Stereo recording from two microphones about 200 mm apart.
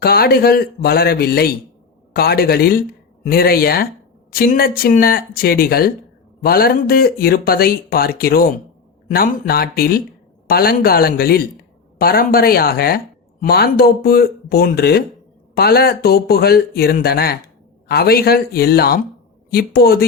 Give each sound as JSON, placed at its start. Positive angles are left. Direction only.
{"t": 0.0, "sound": "speech", "side_deg": 50}